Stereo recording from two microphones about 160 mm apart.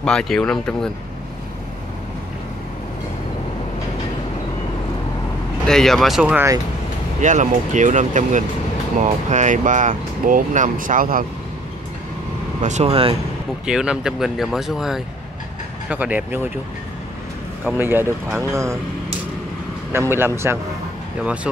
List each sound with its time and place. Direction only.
0.0 s speech: 5° left (ahead or behind)
5.7 s speech: centre (ahead or behind)
7.2 s speech: 50° right (ahead or behind)
12.6 s speech: 45° right (ahead or behind)
13.7 s speech: 5° right (ahead or behind)
17.6 s speech: 15° right (ahead or behind)
19.9 s speech: 15° right (ahead or behind)